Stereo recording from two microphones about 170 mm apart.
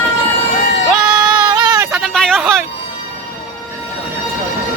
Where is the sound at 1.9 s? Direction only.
Centre (ahead or behind).